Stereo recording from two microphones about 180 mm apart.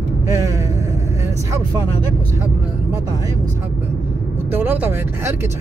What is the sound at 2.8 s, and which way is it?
Speech, 20° right (ahead or behind).